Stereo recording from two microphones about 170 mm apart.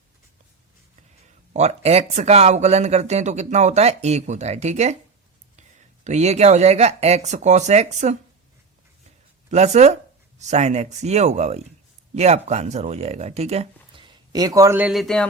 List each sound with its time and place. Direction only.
1.5 s speech: 40° right (ahead or behind)
6.1 s speech: 40° right (ahead or behind)
9.5 s speech: 40° right (ahead or behind)
13.9 s speech: 30° right (ahead or behind); by 15.3 s centre (ahead or behind)